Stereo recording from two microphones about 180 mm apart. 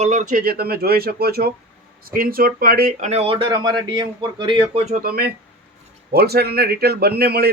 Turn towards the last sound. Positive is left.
turn(degrees=-60)  # may be behind; listen again after turning